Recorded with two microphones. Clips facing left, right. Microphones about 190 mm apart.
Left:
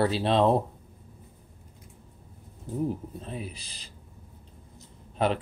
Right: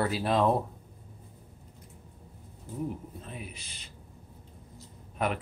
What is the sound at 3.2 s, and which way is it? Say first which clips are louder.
Speech: left 5 dB; 30° left (ahead or behind).